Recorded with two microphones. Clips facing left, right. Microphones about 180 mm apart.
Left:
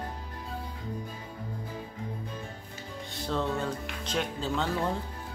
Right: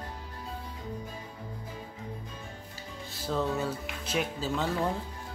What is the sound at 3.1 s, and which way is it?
Speech, 5° right (ahead or behind).